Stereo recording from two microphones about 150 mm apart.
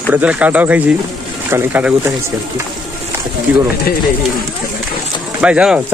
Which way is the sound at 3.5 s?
10° right (ahead or behind).